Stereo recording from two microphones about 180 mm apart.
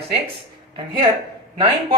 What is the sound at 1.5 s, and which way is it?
Speech, 30° right (ahead or behind).